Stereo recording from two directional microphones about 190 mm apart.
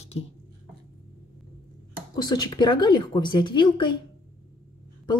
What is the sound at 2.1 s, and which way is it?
Speech, 20° left (ahead or behind).